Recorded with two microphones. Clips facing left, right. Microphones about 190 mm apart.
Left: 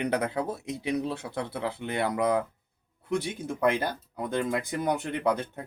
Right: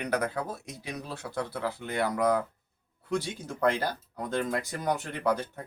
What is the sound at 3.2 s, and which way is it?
Speech, 55° left (ahead or behind).